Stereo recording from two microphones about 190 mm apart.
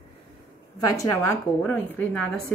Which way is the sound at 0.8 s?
15° left (ahead or behind).